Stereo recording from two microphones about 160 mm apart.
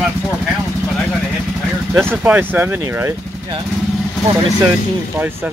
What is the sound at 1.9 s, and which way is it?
Speech, 10° right (ahead or behind).